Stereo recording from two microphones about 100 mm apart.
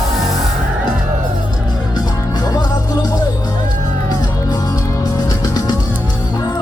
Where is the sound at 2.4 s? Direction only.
40° left (ahead or behind).